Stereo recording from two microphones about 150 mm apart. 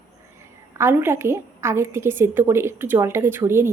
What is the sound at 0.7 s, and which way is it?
A woman's voice, 15° right (ahead or behind).